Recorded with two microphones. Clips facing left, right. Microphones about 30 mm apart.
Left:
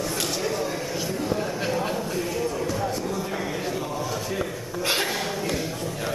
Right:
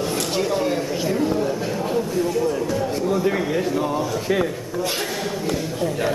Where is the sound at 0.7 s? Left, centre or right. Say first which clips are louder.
Right 6 dB; centre.